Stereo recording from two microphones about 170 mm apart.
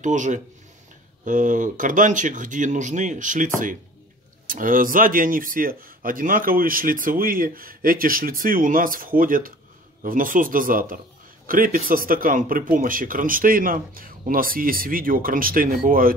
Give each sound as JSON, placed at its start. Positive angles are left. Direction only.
{"t": 0.0, "sound": "speech", "side_deg": -45}